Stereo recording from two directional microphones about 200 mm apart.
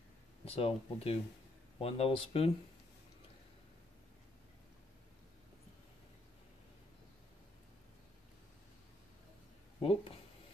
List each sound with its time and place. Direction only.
0.5 s speech: 30° left (ahead or behind)
9.8 s speech: 30° left (ahead or behind)